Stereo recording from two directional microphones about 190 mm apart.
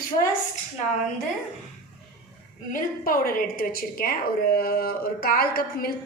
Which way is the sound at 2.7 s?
45° left (ahead or behind).